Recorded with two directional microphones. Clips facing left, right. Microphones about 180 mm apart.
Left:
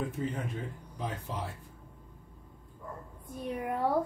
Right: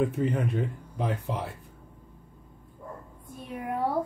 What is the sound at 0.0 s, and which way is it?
Speech, 65° right (ahead or behind).